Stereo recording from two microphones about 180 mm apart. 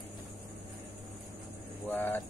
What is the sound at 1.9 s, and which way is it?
Speech, 10° left (ahead or behind).